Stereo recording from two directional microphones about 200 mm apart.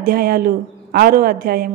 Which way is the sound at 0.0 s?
50° right (ahead or behind).